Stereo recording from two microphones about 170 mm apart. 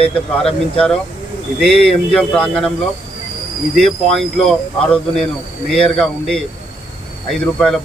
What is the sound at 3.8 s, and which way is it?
A man's voice, centre (ahead or behind).